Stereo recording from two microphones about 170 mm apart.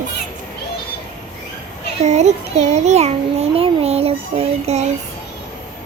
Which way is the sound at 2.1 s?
40° right (ahead or behind).